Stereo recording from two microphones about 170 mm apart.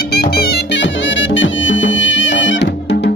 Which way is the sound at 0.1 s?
65° left (ahead or behind).